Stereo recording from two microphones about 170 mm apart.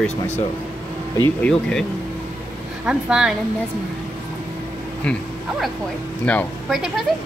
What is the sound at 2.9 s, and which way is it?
Speech, 5° right (ahead or behind).